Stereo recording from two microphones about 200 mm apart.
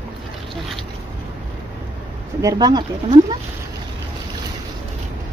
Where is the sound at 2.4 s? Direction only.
20° right (ahead or behind).